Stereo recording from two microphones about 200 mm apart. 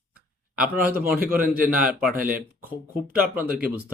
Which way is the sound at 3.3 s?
5° right (ahead or behind).